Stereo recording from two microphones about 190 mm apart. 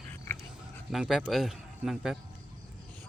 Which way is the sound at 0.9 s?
5° right (ahead or behind).